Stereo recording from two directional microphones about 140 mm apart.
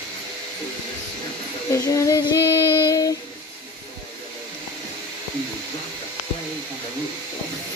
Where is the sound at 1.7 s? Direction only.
20° left (ahead or behind).